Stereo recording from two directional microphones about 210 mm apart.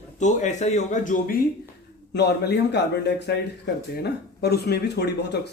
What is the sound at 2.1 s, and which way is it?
Speech, 50° left (ahead or behind).